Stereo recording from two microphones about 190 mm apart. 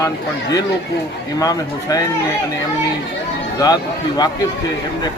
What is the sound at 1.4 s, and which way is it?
Speech, 20° left (ahead or behind).